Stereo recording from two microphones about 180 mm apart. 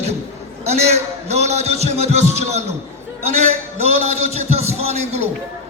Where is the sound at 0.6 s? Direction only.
35° right (ahead or behind).